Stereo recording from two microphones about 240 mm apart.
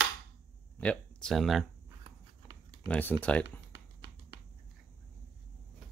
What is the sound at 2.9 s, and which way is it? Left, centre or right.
Speech, centre.